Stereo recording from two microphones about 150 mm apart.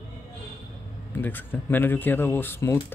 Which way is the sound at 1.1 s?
15° left (ahead or behind).